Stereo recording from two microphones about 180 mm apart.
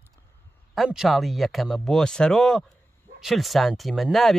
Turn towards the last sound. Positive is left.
turn(degrees=0)  # may be behind; listen again after turning